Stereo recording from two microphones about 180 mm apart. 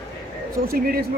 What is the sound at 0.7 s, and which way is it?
Speech, 55° right (ahead or behind).